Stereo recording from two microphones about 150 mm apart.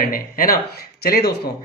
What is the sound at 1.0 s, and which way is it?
Speech, 90° left.